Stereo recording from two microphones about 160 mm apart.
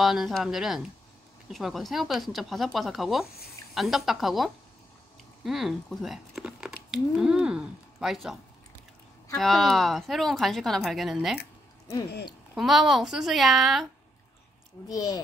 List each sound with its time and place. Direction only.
0.0 s speech: centre (ahead or behind)
3.3 s speech: 75° left (ahead or behind)
3.7 s speech: centre (ahead or behind)
9.4 s speech: centre (ahead or behind)
12.5 s speech: centre (ahead or behind)
14.9 s speech: 25° left (ahead or behind)